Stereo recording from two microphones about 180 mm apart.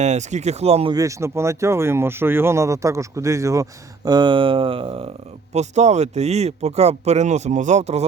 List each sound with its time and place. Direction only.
0.0 s speech: 40° right (ahead or behind)
0.9 s speech: 15° right (ahead or behind); by 8.0 s 40° right (ahead or behind)